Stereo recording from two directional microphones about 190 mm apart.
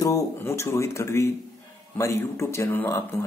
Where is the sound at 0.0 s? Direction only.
15° left (ahead or behind).